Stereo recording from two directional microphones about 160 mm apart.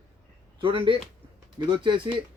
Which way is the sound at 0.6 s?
30° right (ahead or behind).